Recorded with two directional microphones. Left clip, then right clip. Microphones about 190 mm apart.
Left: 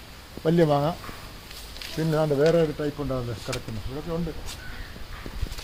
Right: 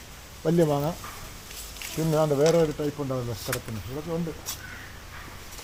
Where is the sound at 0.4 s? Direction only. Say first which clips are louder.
Left 2 dB; 15° left (ahead or behind).